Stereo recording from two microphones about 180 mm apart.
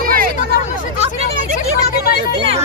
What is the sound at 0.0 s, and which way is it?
Hubbub, 50° right (ahead or behind).